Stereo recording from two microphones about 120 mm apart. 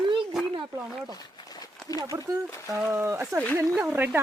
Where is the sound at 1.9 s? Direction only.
30° left (ahead or behind).